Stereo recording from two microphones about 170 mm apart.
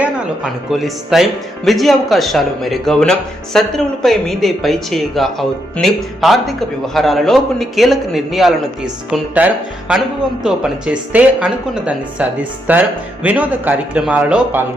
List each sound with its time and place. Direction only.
0.7 s a woman's voice: centre (ahead or behind)